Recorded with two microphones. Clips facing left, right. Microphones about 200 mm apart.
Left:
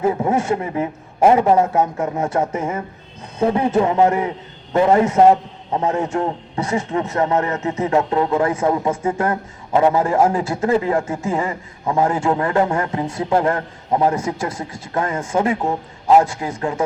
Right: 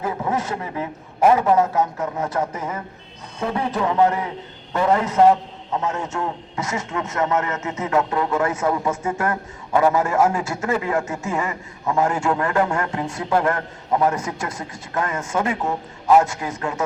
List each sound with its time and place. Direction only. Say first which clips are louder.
0.0 s a man's voice: left 6 dB; 30° left (ahead or behind)